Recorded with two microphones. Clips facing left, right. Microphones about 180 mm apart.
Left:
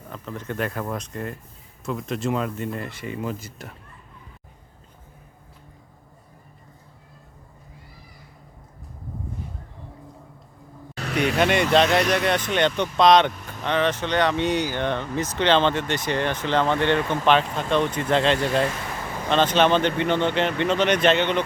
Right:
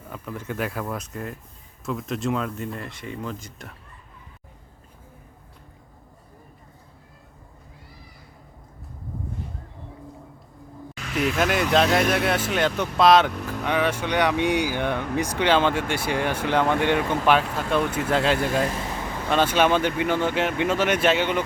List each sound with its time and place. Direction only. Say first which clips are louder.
0.1 s speech: even; 10° right (ahead or behind)
11.0 s vehicle: left 2 dB; 65° left (ahead or behind)
11.3 s speech: left 2 dB; centre (ahead or behind)
13.3 s vehicle: right 9 dB; 75° right (ahead or behind)
13.7 s speech: left 1 dB; 10° right (ahead or behind)